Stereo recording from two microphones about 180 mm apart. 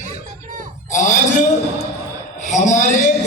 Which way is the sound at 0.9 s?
45° left (ahead or behind).